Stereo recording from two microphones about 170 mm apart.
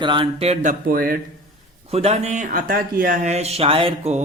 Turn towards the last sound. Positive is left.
turn(degrees=-35)  # may be behind; listen again after turning